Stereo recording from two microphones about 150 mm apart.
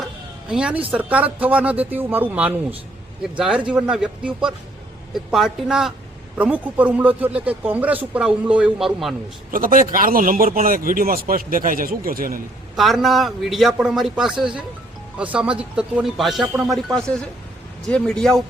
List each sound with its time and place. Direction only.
0.0 s a man's voice: 5° right (ahead or behind)
9.5 s speech: 70° right (ahead or behind)
12.7 s a man's voice: centre (ahead or behind)